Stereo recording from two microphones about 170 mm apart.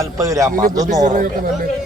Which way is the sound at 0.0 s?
20° right (ahead or behind).